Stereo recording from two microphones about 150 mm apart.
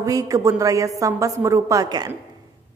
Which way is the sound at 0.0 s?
25° right (ahead or behind).